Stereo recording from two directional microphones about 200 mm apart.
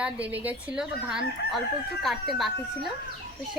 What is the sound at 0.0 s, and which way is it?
A woman's voice, 10° right (ahead or behind).